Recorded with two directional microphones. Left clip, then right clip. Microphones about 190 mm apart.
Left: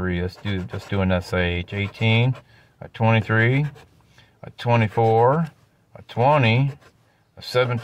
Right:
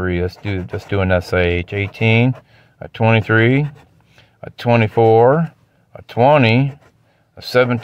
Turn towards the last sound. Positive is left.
turn(degrees=-45)  # may be behind; listen again after turning